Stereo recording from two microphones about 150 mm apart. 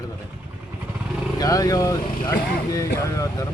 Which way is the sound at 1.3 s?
25° left (ahead or behind).